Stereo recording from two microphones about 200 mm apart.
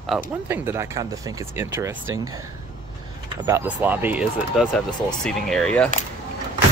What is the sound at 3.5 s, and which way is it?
Speech, 10° right (ahead or behind).